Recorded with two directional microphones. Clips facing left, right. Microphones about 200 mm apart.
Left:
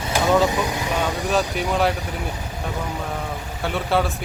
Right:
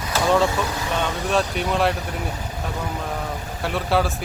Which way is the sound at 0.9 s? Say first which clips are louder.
Even; 5° left (ahead or behind).